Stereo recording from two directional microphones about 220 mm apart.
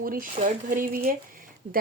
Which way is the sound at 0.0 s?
40° right (ahead or behind).